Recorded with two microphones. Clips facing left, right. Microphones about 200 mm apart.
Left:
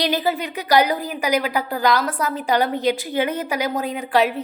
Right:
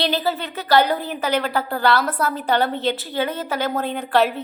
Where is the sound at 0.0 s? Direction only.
15° left (ahead or behind).